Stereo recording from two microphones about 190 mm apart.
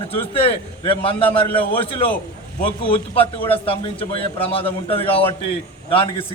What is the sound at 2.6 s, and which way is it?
A man's voice, 30° left (ahead or behind).